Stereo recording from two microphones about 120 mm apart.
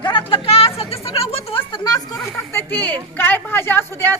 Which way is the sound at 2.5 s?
15° left (ahead or behind).